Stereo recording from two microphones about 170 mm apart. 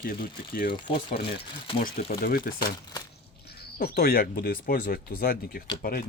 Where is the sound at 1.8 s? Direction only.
55° left (ahead or behind).